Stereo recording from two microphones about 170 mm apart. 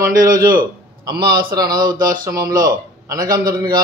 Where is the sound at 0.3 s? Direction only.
55° right (ahead or behind).